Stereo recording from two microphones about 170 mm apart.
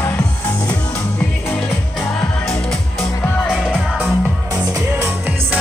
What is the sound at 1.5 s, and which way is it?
Music, centre (ahead or behind).